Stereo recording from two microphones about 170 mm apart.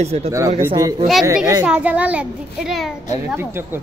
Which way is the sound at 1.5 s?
10° right (ahead or behind).